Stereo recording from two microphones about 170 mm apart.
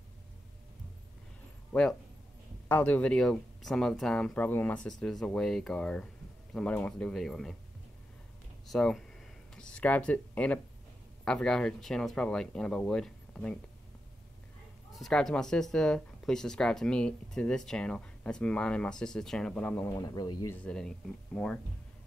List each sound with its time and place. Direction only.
1.7 s speech: 5° left (ahead or behind)
8.7 s speech: 5° left (ahead or behind)
15.0 s speech: centre (ahead or behind)
20.0 s speech: 20° left (ahead or behind)
20.5 s speech: 5° left (ahead or behind)